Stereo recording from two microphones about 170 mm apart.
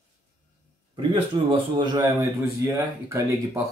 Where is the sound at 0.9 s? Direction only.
30° right (ahead or behind).